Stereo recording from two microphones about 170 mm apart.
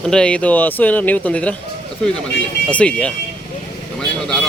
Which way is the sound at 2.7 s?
5° left (ahead or behind).